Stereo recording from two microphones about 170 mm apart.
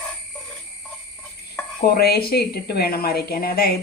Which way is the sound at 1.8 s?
65° left (ahead or behind).